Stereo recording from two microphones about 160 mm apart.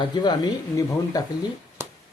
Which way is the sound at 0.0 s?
25° left (ahead or behind).